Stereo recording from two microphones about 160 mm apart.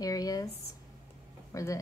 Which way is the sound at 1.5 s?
20° left (ahead or behind).